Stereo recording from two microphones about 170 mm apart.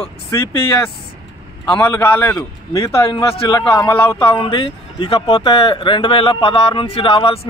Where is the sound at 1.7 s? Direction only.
15° left (ahead or behind).